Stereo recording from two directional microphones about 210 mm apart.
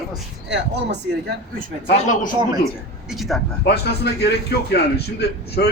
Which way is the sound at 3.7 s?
50° left (ahead or behind).